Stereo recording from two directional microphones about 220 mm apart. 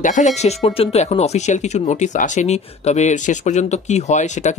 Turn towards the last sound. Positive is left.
turn(degrees=30)  # may be behind; listen again after turning